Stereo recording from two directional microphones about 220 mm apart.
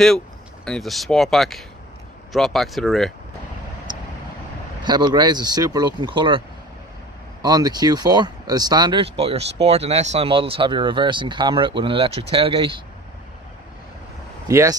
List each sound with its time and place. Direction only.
0.7 s speech: centre (ahead or behind)
4.8 s speech: 20° right (ahead or behind)
7.4 s speech: 20° right (ahead or behind)
14.5 s speech: 15° right (ahead or behind)